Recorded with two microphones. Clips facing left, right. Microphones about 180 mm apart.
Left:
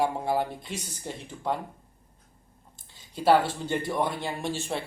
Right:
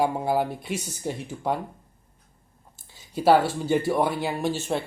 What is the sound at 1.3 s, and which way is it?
Speech, 25° right (ahead or behind).